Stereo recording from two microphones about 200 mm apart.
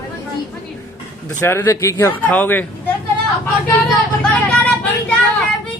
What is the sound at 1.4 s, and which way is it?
Speech, 10° left (ahead or behind).